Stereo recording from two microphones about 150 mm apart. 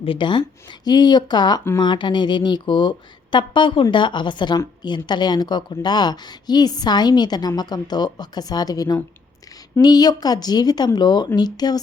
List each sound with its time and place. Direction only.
0.0 s a woman's voice: 35° left (ahead or behind)